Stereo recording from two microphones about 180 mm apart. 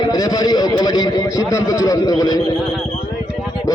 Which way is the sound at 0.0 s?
20° left (ahead or behind).